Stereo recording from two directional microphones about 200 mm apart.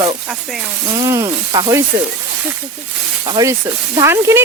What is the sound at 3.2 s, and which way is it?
Speech, 20° right (ahead or behind).